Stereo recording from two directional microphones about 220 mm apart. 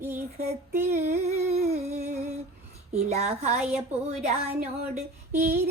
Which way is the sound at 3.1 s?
30° right (ahead or behind).